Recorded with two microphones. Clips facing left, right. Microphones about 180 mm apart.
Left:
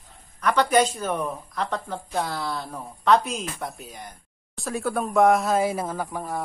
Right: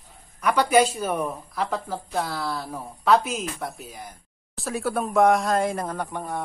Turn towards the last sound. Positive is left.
turn(degrees=0)  # may be behind; listen again after turning